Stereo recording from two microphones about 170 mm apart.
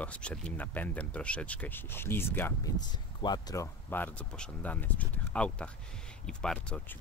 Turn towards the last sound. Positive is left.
turn(degrees=5)  # may be behind; listen again after turning